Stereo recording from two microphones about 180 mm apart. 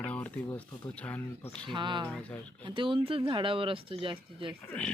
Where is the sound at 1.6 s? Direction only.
25° right (ahead or behind).